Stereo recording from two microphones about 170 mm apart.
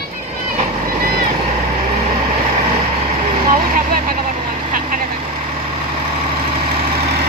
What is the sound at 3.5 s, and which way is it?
Speech, 55° right (ahead or behind).